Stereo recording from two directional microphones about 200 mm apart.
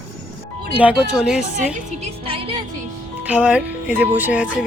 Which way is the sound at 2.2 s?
25° right (ahead or behind).